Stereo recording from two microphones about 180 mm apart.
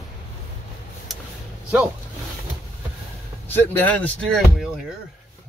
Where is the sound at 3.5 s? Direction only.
10° left (ahead or behind).